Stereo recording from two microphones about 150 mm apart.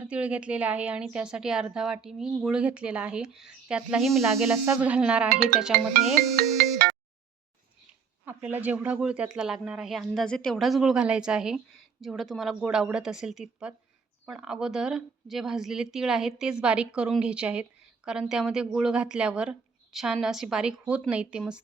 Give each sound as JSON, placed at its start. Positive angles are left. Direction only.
{"t": 0.0, "sound": "a woman's voice", "side_deg": -10}
{"t": 5.3, "sound": "speech", "side_deg": -75}
{"t": 6.1, "sound": "ringtone", "side_deg": -90}
{"t": 8.2, "sound": "a woman's voice", "side_deg": -15}